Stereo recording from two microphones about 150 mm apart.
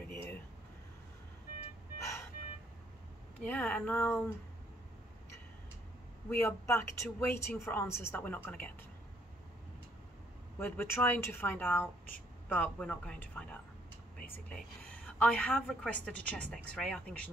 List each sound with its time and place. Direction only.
0.0 s a sound: 10° left (ahead or behind)
3.4 s speech: 10° left (ahead or behind)
6.3 s speech: 15° left (ahead or behind)
10.6 s speech: 15° left (ahead or behind)